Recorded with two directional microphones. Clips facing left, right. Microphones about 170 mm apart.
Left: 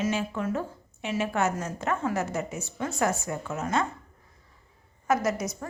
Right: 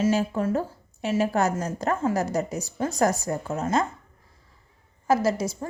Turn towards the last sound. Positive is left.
turn(degrees=-30)  # may be behind; listen again after turning